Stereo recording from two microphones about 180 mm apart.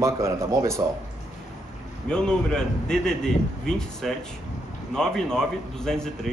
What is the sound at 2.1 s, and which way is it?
A man's voice, 5° left (ahead or behind).